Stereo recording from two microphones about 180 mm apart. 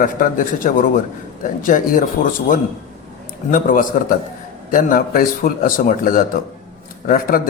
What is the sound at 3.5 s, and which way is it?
A man's voice, 50° left (ahead or behind).